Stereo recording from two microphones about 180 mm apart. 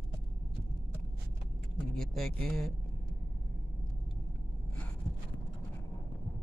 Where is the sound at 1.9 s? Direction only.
Centre (ahead or behind).